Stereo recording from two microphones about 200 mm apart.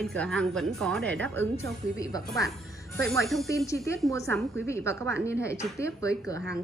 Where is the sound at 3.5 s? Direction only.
15° left (ahead or behind).